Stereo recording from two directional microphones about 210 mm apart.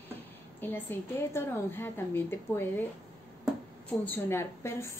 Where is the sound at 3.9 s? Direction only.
10° left (ahead or behind).